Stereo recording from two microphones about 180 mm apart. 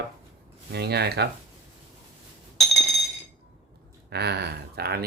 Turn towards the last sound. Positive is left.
turn(degrees=-60)  # may be behind; listen again after turning